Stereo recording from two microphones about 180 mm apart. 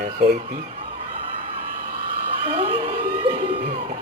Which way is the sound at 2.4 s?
30° right (ahead or behind).